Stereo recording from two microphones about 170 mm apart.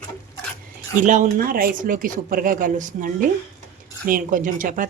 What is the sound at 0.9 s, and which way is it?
Speech, 50° right (ahead or behind).